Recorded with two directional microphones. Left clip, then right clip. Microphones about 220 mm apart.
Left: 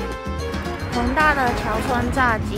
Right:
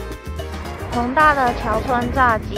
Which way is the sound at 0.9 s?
Centre (ahead or behind).